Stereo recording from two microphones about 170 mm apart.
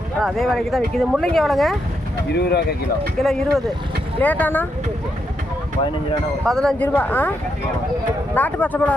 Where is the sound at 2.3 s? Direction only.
75° left (ahead or behind).